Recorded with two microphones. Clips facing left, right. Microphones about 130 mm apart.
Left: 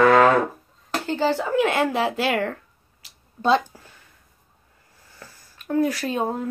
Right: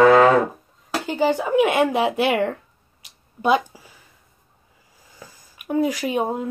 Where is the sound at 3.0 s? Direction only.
10° right (ahead or behind).